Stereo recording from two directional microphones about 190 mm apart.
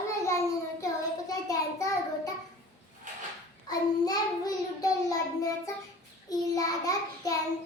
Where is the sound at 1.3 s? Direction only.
20° left (ahead or behind).